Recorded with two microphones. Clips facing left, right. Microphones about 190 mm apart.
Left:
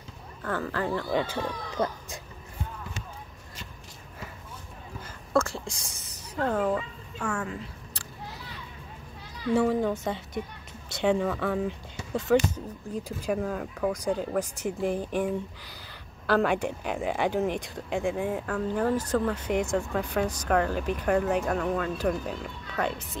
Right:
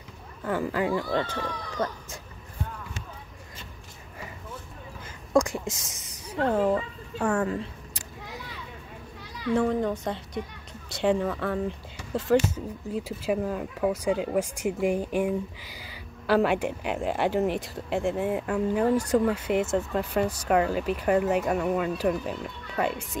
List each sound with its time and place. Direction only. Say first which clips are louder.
0.4 s speech: right 3 dB; 15° right (ahead or behind)
1.1 s speech: even; 10° left (ahead or behind)
5.3 s whispering: right 3 dB; 15° right (ahead or behind)
5.7 s a child's voice: right 5 dB; centre (ahead or behind)
7.2 s a woman's voice: right 6 dB; 35° right (ahead or behind)
9.5 s a child's voice: even; 5° left (ahead or behind)